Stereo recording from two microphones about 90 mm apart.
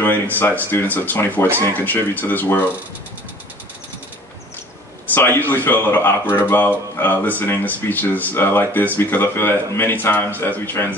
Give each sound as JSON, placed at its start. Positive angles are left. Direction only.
{"t": 0.0, "sound": "speech", "side_deg": 20}
{"t": 5.1, "sound": "speech", "side_deg": 25}